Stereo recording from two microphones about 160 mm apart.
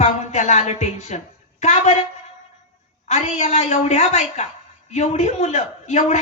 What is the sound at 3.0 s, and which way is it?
A woman's voice, 45° left (ahead or behind).